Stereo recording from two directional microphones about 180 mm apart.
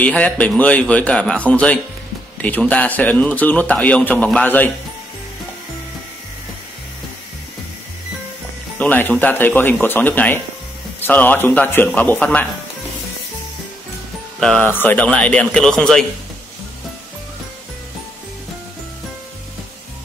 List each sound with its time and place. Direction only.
0.0 s a man's voice: 5° left (ahead or behind)
8.7 s a man's voice: 10° left (ahead or behind)
14.4 s a man's voice: 5° left (ahead or behind)